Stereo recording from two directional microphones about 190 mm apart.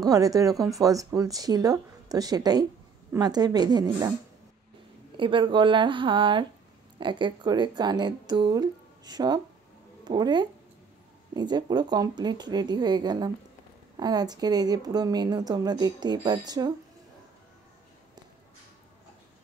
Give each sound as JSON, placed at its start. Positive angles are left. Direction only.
{"t": 0.0, "sound": "speech", "side_deg": -20}
{"t": 5.1, "sound": "speech", "side_deg": -25}